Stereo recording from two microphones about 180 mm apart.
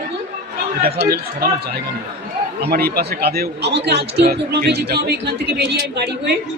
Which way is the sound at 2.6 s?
60° right (ahead or behind).